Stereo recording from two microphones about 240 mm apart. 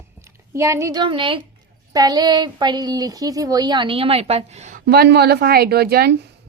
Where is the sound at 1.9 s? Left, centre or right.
Centre.